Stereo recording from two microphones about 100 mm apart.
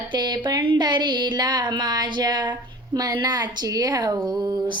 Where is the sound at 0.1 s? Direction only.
45° right (ahead or behind).